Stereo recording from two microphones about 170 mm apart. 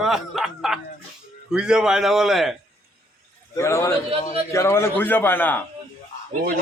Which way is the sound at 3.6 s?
15° left (ahead or behind).